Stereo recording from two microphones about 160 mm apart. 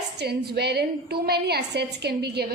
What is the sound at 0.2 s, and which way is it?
A woman's voice, 90° right.